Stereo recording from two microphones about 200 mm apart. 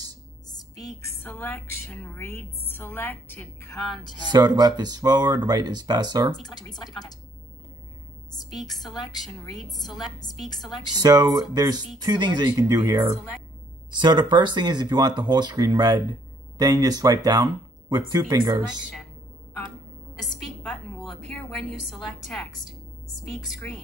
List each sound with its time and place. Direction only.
1.0 s a woman's voice: 10° left (ahead or behind)
4.3 s speech: 20° right (ahead or behind)
6.4 s speech: 20° left (ahead or behind)
8.5 s a woman's voice: centre (ahead or behind)
11.0 s speech: 20° right (ahead or behind)
21.5 s a woman's voice: centre (ahead or behind)